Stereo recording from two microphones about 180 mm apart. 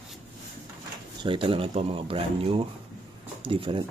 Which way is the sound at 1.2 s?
30° right (ahead or behind).